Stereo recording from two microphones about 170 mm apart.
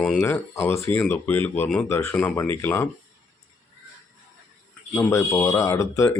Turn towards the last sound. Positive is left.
turn(degrees=15)  # may be behind; listen again after turning